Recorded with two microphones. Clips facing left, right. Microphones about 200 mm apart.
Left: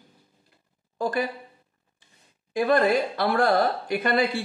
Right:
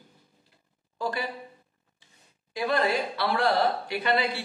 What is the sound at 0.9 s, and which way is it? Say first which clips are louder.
Speech: left 5 dB; 50° left (ahead or behind).